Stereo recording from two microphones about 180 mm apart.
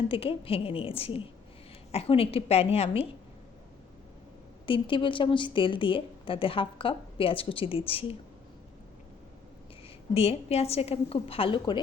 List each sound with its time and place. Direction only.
0.1 s a woman's voice: 30° left (ahead or behind)
4.6 s a woman's voice: 30° left (ahead or behind)
10.2 s a woman's voice: 35° left (ahead or behind)